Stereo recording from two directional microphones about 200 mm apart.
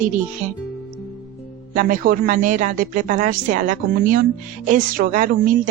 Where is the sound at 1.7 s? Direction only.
45° right (ahead or behind).